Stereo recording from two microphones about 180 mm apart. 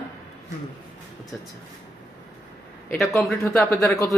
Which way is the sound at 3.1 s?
10° left (ahead or behind).